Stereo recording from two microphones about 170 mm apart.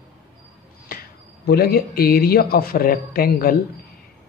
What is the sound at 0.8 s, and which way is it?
Speech, 65° left (ahead or behind).